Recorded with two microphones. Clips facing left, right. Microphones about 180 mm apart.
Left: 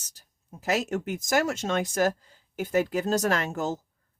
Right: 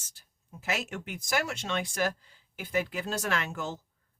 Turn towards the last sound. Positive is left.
turn(degrees=40)  # may be behind; listen again after turning